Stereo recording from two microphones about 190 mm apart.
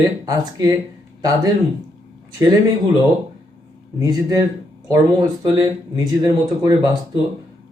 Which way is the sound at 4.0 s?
20° right (ahead or behind).